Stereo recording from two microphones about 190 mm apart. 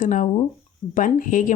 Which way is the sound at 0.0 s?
45° left (ahead or behind).